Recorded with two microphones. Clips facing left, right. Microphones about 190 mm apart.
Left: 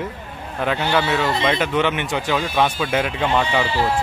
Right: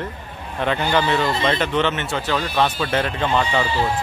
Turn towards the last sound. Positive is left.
turn(degrees=10)  # may be behind; listen again after turning